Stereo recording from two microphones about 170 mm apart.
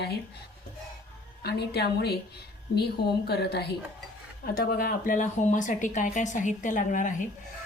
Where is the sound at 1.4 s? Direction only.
75° left (ahead or behind).